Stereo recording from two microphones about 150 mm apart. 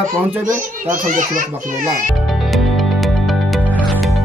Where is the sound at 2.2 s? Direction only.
Centre (ahead or behind).